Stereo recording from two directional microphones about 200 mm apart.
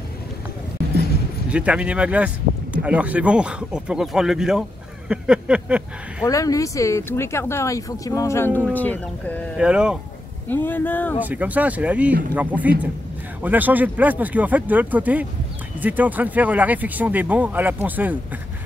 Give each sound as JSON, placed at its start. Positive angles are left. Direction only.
{"t": 1.5, "sound": "speech", "side_deg": -5}
{"t": 6.2, "sound": "speech", "side_deg": 15}
{"t": 9.6, "sound": "speech", "side_deg": -5}
{"t": 10.5, "sound": "speech", "side_deg": 10}
{"t": 11.1, "sound": "speech", "side_deg": -10}